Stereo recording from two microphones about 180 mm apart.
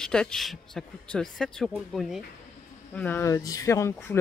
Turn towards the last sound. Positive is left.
turn(degrees=15)  # may be behind; listen again after turning